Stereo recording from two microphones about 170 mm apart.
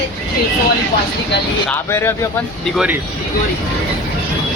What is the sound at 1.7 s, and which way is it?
Speech, 15° left (ahead or behind).